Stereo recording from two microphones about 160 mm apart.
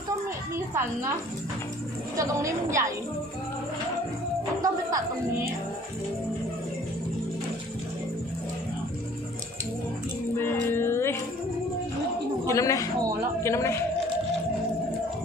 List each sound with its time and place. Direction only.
0.5 s a woman's voice: 15° right (ahead or behind)
2.1 s a woman's voice: 20° right (ahead or behind)
4.6 s a woman's voice: 20° right (ahead or behind)
10.3 s music: 15° left (ahead or behind)
12.5 s a man's voice: 20° left (ahead or behind)